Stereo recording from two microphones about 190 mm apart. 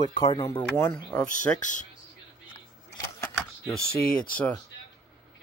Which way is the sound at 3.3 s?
Centre (ahead or behind).